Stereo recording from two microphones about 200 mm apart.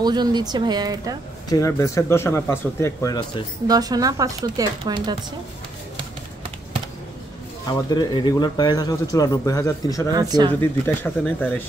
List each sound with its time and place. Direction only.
0.0 s speech: 20° right (ahead or behind)
1.5 s a man's voice: 15° left (ahead or behind)
3.6 s speech: 20° right (ahead or behind)
7.7 s a man's voice: 20° left (ahead or behind)
10.1 s speech: 20° right (ahead or behind)
10.6 s a man's voice: 10° left (ahead or behind)